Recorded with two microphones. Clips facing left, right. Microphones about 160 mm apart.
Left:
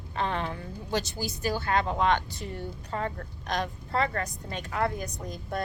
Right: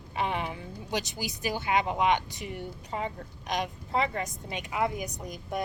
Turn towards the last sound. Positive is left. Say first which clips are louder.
# even
turn(degrees=-15)  # may be behind; listen again after turning